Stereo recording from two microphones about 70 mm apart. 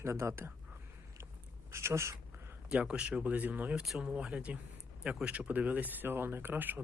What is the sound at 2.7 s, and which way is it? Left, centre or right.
Speech, centre.